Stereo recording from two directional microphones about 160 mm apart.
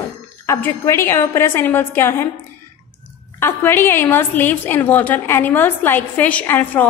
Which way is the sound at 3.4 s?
15° left (ahead or behind).